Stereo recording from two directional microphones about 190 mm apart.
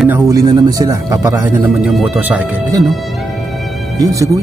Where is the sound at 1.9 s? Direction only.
10° right (ahead or behind).